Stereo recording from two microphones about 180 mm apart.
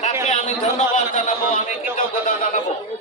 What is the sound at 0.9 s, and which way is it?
Speech, 45° left (ahead or behind).